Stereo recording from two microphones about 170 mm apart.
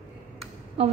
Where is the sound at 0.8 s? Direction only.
35° right (ahead or behind).